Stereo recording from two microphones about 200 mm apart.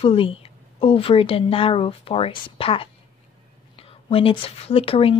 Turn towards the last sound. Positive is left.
turn(degrees=30)  # may be behind; listen again after turning